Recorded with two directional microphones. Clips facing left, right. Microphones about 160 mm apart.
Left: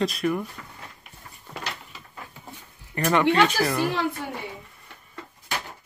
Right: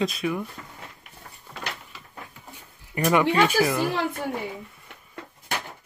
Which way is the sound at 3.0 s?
10° right (ahead or behind).